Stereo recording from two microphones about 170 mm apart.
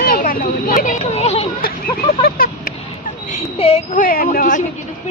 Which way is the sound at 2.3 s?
55° left (ahead or behind).